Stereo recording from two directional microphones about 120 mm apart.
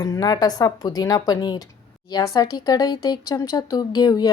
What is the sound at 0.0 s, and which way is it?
A woman's voice, 30° left (ahead or behind).